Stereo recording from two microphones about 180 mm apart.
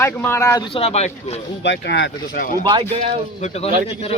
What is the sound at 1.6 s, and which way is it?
Speech, 75° left (ahead or behind).